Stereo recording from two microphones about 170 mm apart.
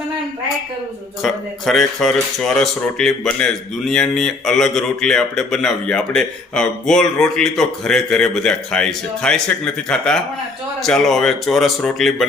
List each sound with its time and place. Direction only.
1.2 s speech: centre (ahead or behind)